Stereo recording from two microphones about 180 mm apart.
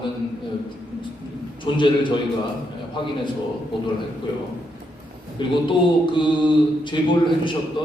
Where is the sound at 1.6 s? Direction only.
25° left (ahead or behind).